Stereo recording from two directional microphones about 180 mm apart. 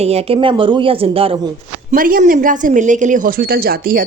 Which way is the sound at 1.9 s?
50° right (ahead or behind).